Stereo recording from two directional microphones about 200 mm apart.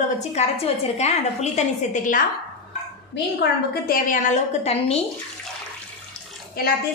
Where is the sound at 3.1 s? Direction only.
50° left (ahead or behind); by 5.0 s 30° left (ahead or behind).